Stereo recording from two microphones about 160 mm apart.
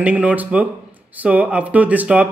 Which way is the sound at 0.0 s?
10° right (ahead or behind).